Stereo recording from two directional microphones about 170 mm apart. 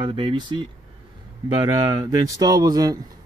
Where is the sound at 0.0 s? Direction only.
30° right (ahead or behind).